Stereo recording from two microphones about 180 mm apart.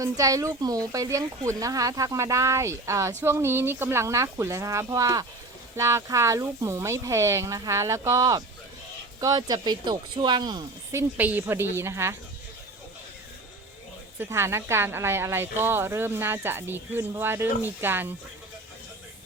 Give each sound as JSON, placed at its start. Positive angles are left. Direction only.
{"t": 0.0, "sound": "speech", "side_deg": -20}
{"t": 11.2, "sound": "speech", "side_deg": -10}
{"t": 14.2, "sound": "speech", "side_deg": -15}